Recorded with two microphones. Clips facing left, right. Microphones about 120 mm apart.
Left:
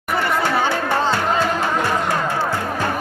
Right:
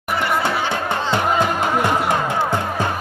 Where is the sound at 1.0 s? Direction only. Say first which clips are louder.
Even; 20° right (ahead or behind).